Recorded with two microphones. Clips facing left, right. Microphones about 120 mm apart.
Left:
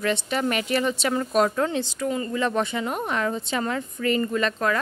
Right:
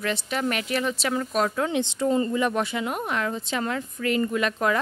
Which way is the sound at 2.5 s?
5° right (ahead or behind).